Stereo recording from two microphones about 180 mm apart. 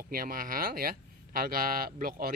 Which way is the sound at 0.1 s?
55° right (ahead or behind).